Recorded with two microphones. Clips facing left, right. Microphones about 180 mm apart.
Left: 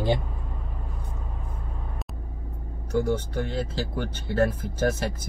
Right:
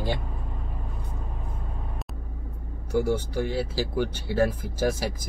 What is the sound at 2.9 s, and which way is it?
Speech, 10° right (ahead or behind).